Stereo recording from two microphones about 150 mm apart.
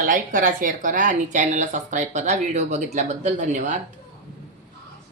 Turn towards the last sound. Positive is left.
turn(degrees=-55)  # may be behind; listen again after turning